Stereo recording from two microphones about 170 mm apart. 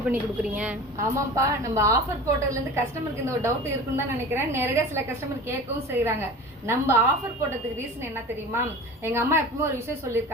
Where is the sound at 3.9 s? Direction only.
15° right (ahead or behind).